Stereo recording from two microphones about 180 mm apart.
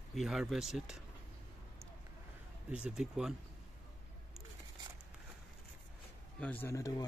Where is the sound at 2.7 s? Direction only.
5° right (ahead or behind).